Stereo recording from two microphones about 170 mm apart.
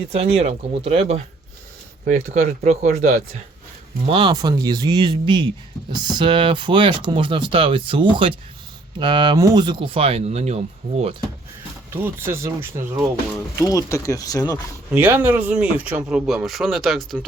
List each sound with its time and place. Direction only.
0.1 s speech: 35° right (ahead or behind)
4.0 s speech: 30° right (ahead or behind)
11.9 s speech: 15° right (ahead or behind)
13.6 s speech: 20° left (ahead or behind)
14.9 s speech: 10° right (ahead or behind)